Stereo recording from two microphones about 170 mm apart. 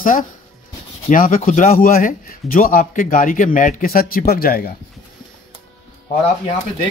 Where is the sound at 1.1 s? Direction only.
55° left (ahead or behind).